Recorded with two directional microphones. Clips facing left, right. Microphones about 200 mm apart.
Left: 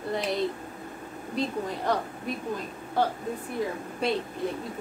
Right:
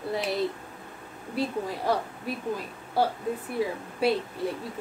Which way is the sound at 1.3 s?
5° right (ahead or behind).